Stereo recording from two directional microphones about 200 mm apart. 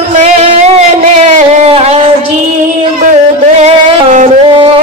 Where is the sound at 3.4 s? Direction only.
35° right (ahead or behind).